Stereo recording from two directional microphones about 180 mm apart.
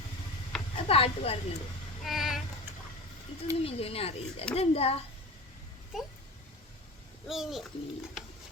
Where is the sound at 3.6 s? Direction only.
35° left (ahead or behind).